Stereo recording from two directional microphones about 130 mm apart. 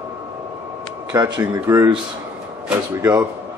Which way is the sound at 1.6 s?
15° right (ahead or behind).